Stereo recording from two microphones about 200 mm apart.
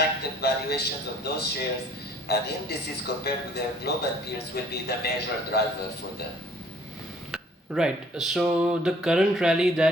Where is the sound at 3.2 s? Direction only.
55° left (ahead or behind).